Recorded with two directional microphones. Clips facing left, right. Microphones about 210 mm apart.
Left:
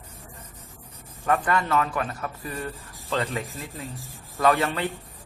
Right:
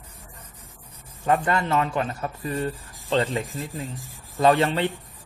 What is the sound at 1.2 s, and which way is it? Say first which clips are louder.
A man's voice: right 2 dB; 25° right (ahead or behind).